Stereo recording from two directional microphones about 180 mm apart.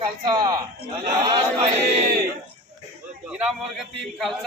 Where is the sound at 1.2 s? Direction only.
25° right (ahead or behind).